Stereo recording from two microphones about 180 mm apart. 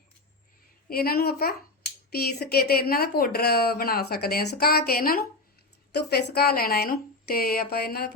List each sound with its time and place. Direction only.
0.9 s speech: 55° left (ahead or behind)